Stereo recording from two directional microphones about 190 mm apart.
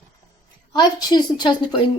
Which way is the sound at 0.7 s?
20° left (ahead or behind).